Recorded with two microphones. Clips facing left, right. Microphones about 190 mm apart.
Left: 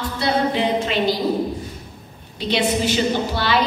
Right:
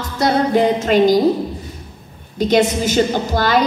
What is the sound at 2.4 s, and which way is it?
A woman's voice, 45° right (ahead or behind).